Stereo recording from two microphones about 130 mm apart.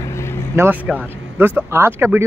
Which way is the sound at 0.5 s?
15° right (ahead or behind).